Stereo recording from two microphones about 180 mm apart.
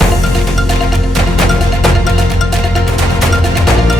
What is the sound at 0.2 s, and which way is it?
Music, centre (ahead or behind).